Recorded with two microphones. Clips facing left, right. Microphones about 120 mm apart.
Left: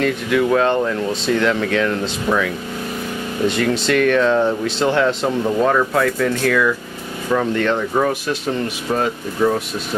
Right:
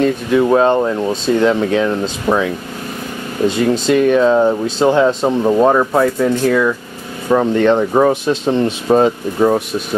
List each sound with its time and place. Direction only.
0.0 s speech: 25° right (ahead or behind)
3.8 s speech: 20° right (ahead or behind)